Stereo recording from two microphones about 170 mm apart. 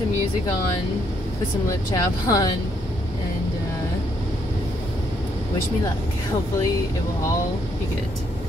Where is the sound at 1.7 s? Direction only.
15° left (ahead or behind).